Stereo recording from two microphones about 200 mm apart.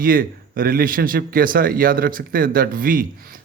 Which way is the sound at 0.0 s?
45° right (ahead or behind).